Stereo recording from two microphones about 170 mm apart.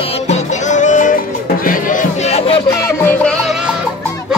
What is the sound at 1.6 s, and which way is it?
Crowd, 55° left (ahead or behind).